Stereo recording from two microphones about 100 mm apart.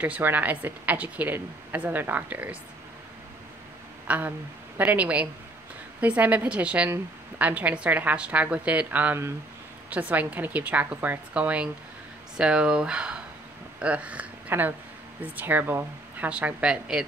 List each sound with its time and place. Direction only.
0.0 s a woman's voice: 20° right (ahead or behind)
4.1 s a woman's voice: 15° right (ahead or behind)